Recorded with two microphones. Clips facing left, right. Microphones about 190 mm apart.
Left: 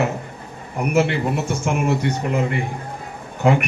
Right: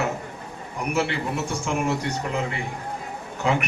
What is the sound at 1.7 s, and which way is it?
Speech, 60° left (ahead or behind).